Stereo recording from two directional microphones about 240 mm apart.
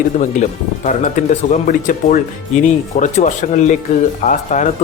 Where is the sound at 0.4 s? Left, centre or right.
Left.